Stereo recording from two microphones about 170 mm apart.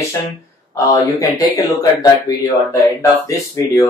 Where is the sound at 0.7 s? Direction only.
20° left (ahead or behind).